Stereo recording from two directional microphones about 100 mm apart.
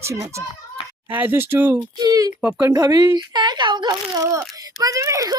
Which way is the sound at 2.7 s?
40° right (ahead or behind).